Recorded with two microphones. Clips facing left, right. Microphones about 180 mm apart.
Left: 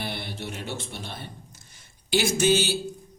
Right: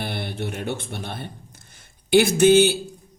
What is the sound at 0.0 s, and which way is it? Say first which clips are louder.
Music: right 5 dB; 55° right (ahead or behind).